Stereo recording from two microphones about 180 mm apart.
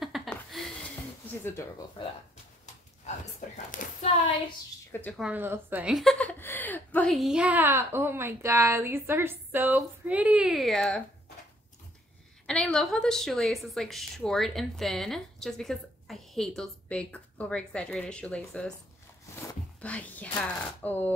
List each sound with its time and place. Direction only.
0.0 s a sound: centre (ahead or behind)
3.3 s speech: 40° left (ahead or behind)
5.0 s a woman's voice: 5° right (ahead or behind)
12.4 s a woman's voice: 5° left (ahead or behind)